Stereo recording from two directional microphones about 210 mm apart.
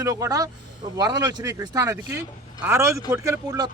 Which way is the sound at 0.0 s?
15° right (ahead or behind).